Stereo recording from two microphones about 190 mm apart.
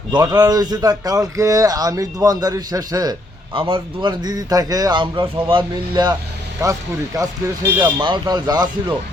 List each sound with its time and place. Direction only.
0.1 s a man's voice: 20° right (ahead or behind)